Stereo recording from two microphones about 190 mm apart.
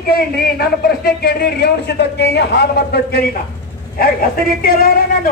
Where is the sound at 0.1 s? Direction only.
55° left (ahead or behind).